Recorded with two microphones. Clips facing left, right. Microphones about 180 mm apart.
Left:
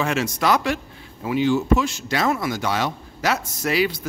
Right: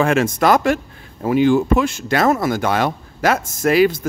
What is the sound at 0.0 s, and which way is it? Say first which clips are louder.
Speech: right 6 dB; 50° right (ahead or behind).